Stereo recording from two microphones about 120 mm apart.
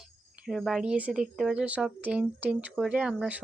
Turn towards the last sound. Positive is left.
turn(degrees=-10)  # may be behind; listen again after turning